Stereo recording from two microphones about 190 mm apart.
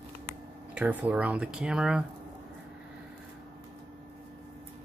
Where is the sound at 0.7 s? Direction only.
10° right (ahead or behind).